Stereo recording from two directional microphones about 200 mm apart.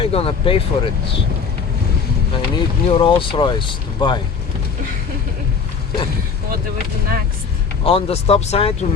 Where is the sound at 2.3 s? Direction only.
25° left (ahead or behind).